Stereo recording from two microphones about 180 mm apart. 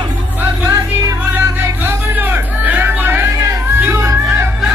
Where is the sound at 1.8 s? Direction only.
10° right (ahead or behind).